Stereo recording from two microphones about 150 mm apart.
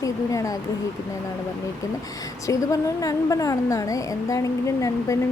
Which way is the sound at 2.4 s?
20° left (ahead or behind).